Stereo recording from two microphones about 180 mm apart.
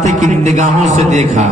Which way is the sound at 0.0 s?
40° right (ahead or behind).